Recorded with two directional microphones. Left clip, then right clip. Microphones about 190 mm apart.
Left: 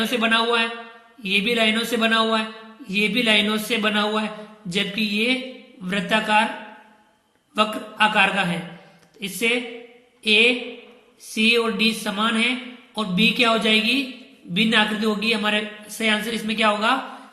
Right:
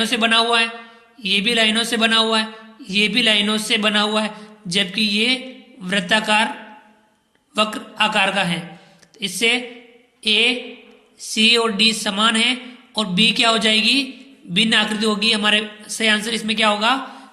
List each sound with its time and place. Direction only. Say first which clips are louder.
0.0 s a man's voice: right 3 dB; 35° right (ahead or behind)
7.5 s a man's voice: right 2 dB; 35° right (ahead or behind)